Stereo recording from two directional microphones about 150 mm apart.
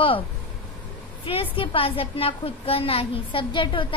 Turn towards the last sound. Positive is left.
turn(degrees=35)  # may be behind; listen again after turning